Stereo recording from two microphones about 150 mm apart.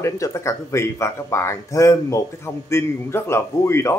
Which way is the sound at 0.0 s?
20° left (ahead or behind).